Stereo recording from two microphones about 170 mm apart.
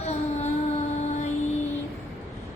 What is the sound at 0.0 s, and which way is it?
Music, 40° left (ahead or behind).